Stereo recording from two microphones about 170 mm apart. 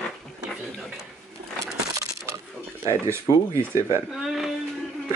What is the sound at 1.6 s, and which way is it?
Coin, 15° right (ahead or behind).